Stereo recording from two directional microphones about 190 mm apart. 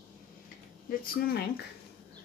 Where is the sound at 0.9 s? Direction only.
55° left (ahead or behind).